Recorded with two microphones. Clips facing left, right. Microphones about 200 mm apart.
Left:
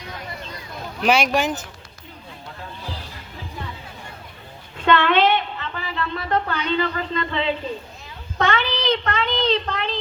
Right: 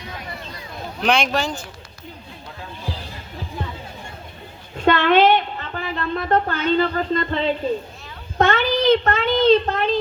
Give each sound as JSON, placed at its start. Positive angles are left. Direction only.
{"t": 1.0, "sound": "speech", "side_deg": 5}
{"t": 4.8, "sound": "a woman's voice", "side_deg": -45}